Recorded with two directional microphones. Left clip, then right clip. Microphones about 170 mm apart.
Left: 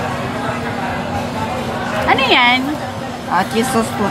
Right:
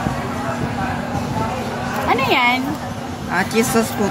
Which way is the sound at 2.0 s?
5° right (ahead or behind).